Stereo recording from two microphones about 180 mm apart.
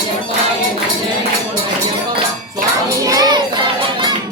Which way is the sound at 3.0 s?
20° right (ahead or behind).